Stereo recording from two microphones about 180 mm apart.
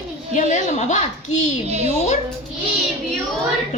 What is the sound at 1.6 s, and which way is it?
Speech, 35° right (ahead or behind).